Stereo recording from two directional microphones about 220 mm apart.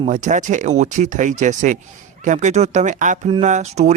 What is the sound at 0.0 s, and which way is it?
Speech, 35° right (ahead or behind).